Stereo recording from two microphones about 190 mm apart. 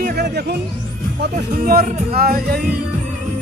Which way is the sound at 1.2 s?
50° right (ahead or behind).